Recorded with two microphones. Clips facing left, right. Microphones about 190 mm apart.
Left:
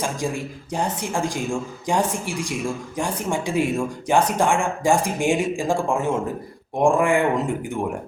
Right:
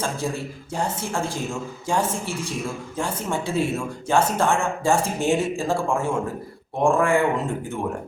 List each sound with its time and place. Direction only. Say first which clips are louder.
0.0 s speech: left 1 dB; 15° left (ahead or behind)